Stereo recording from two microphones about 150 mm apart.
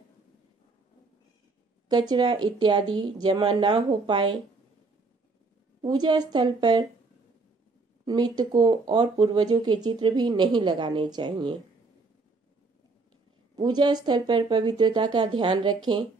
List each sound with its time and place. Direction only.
1.9 s speech: 30° right (ahead or behind)
5.8 s speech: 30° right (ahead or behind)
8.0 s speech: 25° right (ahead or behind)
13.6 s speech: 30° right (ahead or behind)